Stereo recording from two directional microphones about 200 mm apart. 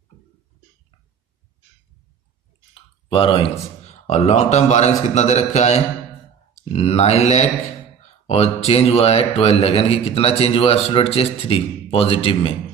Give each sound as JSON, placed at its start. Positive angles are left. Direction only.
{"t": 2.7, "sound": "speech", "side_deg": 25}